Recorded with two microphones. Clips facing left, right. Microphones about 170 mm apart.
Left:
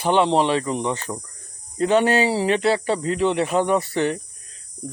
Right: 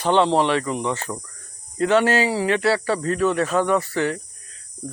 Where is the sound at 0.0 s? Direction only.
10° left (ahead or behind).